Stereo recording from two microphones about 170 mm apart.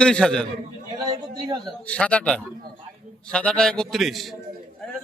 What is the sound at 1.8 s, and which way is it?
A man's voice, 5° left (ahead or behind).